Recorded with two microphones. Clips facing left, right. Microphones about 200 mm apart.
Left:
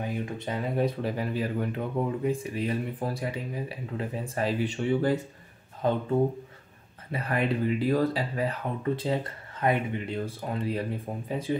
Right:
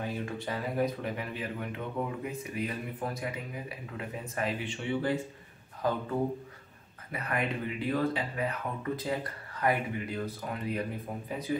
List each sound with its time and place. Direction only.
0.0 s speech: 20° left (ahead or behind); by 5.2 s 40° left (ahead or behind)
5.8 s speech: 25° left (ahead or behind)